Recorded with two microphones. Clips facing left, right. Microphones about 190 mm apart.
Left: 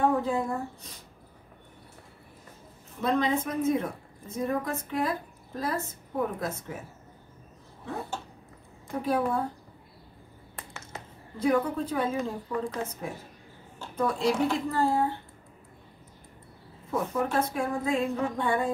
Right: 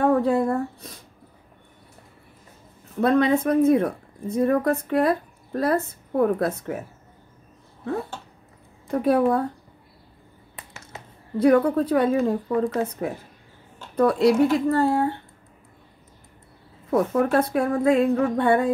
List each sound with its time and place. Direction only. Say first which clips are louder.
0.0 s a sound: right 6 dB; 65° right (ahead or behind)
3.0 s a woman's voice: right 7 dB; 65° right (ahead or behind)
8.9 s a woman's voice: right 8 dB; 65° right (ahead or behind)
11.3 s a woman's voice: right 8 dB; 65° right (ahead or behind)
16.9 s a woman's voice: right 8 dB; 70° right (ahead or behind)